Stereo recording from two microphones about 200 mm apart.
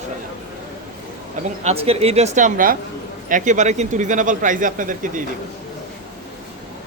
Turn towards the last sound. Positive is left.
turn(degrees=-40)  # may be behind; listen again after turning